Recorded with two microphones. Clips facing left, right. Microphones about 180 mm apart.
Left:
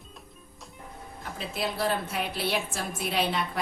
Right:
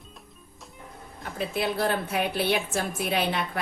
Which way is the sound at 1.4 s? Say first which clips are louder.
Right 4 dB; 60° right (ahead or behind).